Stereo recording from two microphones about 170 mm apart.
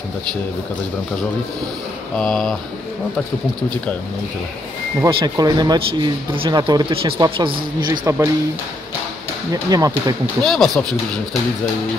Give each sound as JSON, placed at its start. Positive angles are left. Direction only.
{"t": 2.1, "sound": "speech", "side_deg": 5}
{"t": 5.0, "sound": "speech", "side_deg": -25}
{"t": 9.5, "sound": "speech", "side_deg": -20}
{"t": 10.4, "sound": "speech", "side_deg": 0}